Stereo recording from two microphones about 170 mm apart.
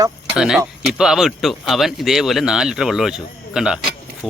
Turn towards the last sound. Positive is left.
turn(degrees=-5)  # may be behind; listen again after turning